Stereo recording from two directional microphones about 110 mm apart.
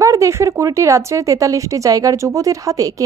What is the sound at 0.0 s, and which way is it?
Speech, 30° right (ahead or behind).